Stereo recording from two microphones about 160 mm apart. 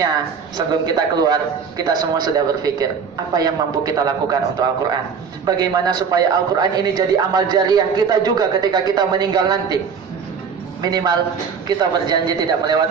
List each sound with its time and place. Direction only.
0.0 s speech: 25° right (ahead or behind)
10.8 s speech: 25° right (ahead or behind)